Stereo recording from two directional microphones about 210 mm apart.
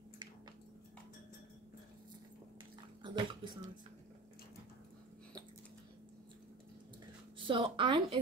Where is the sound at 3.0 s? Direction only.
25° right (ahead or behind).